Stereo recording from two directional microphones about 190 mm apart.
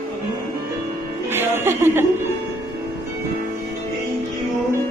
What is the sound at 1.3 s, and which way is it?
Music, 10° right (ahead or behind).